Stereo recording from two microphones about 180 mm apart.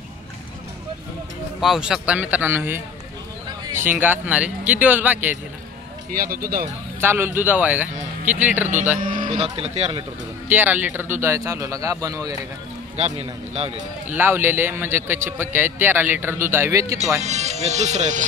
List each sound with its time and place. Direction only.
1.6 s speech: 5° right (ahead or behind)
6.1 s speech: 55° right (ahead or behind)
7.0 s speech: 10° right (ahead or behind)
9.3 s speech: 35° right (ahead or behind)
10.5 s speech: 10° right (ahead or behind)
12.9 s speech: 35° right (ahead or behind)
14.1 s speech: 10° right (ahead or behind)
17.2 s speech: 40° right (ahead or behind)